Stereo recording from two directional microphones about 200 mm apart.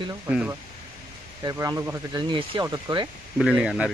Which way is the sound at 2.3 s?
25° right (ahead or behind).